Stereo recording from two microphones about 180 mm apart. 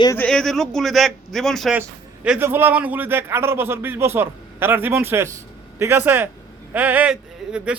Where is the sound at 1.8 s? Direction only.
10° right (ahead or behind).